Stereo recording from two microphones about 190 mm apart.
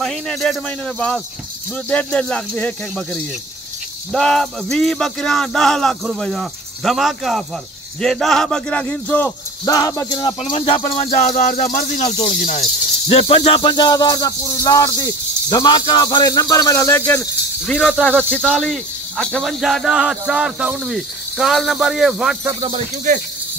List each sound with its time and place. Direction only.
0.0 s speech: centre (ahead or behind); by 11.1 s 25° left (ahead or behind)
11.1 s speech: 45° left (ahead or behind)
13.6 s speech: 25° left (ahead or behind); by 22.4 s centre (ahead or behind)
22.4 s speech: 15° right (ahead or behind)